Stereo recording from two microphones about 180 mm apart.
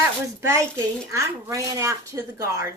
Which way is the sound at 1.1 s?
15° right (ahead or behind).